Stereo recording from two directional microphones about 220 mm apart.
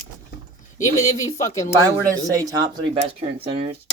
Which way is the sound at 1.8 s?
15° right (ahead or behind).